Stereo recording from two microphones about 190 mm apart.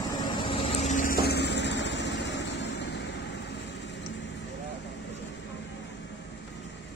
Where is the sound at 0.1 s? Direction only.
20° left (ahead or behind); by 4.0 s 65° left (ahead or behind).